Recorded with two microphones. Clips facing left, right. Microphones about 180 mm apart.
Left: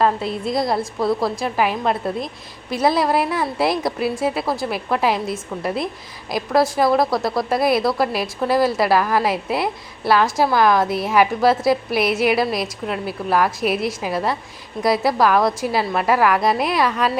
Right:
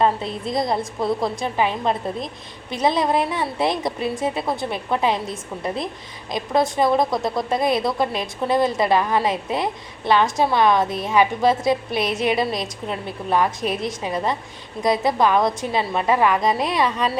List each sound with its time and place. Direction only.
0.0 s a woman's voice: centre (ahead or behind)
7.0 s speech: 20° right (ahead or behind)
7.3 s a woman's voice: 5° left (ahead or behind)